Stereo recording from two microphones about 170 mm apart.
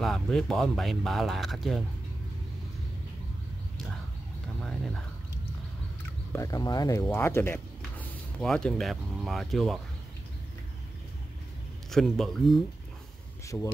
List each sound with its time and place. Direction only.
0.0 s speech: 5° left (ahead or behind)
4.6 s a sound: centre (ahead or behind)
6.3 s speech: 20° left (ahead or behind); by 9.8 s centre (ahead or behind)
11.9 s speech: centre (ahead or behind)
13.5 s speech: 15° left (ahead or behind)